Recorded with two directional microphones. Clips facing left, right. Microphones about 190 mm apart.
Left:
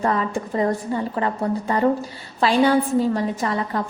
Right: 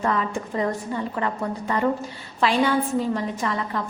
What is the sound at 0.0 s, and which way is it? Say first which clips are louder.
A woman's voice: left 2 dB; 35° left (ahead or behind).